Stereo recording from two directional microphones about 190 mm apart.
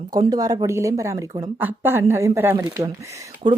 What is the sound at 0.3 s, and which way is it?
A woman's voice, 20° right (ahead or behind).